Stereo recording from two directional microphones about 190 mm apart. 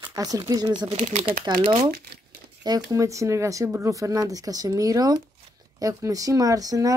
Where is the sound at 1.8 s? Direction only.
50° right (ahead or behind).